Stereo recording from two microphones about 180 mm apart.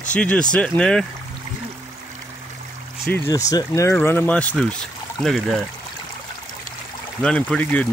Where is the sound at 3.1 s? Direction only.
15° left (ahead or behind).